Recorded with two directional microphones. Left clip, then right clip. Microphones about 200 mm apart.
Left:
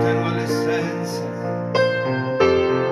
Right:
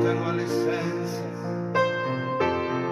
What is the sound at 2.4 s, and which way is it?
Music, 35° left (ahead or behind).